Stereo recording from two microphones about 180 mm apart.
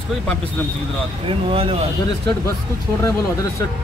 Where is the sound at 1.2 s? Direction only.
30° right (ahead or behind).